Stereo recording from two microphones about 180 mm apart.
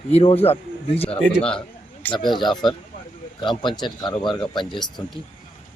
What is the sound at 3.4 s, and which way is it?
Speech, 25° left (ahead or behind).